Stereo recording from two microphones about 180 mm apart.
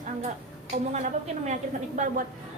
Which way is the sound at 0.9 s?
40° right (ahead or behind).